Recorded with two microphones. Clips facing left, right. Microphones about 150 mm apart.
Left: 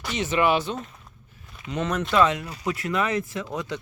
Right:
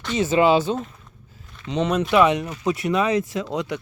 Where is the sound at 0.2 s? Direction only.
30° right (ahead or behind).